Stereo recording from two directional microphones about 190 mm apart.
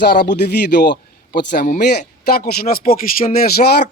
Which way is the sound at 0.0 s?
60° left (ahead or behind).